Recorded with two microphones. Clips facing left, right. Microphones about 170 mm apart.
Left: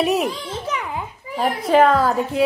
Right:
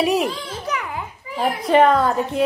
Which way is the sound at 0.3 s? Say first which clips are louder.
Even; 25° left (ahead or behind).